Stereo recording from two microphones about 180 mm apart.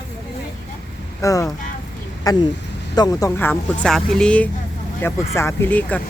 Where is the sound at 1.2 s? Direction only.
20° left (ahead or behind).